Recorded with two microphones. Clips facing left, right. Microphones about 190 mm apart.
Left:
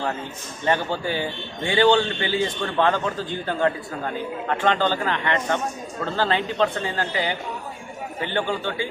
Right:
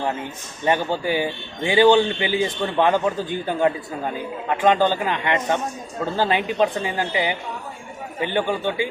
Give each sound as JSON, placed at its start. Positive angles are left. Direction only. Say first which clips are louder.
{"t": 0.6, "sound": "speech", "louder": "right 2 dB", "side_deg": -15}